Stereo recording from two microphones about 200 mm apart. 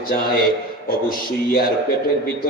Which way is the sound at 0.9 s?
45° left (ahead or behind).